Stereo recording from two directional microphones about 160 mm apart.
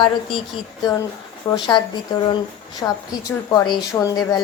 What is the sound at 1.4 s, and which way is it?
Speech, 20° left (ahead or behind).